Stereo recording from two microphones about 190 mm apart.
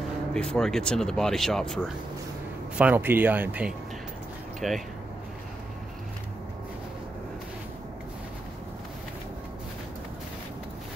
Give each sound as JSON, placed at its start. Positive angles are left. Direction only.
{"t": 0.3, "sound": "speech", "side_deg": 5}
{"t": 2.8, "sound": "speech", "side_deg": -10}